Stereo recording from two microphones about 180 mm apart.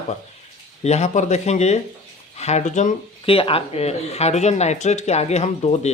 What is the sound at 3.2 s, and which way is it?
Speech, 30° left (ahead or behind).